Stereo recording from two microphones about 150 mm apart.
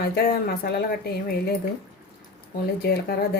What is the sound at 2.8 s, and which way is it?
Speech, 90° left.